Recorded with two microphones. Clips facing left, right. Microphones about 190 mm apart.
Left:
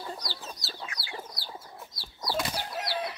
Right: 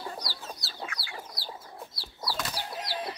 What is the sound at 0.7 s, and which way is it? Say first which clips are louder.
Chicken: right 1 dB; 20° left (ahead or behind).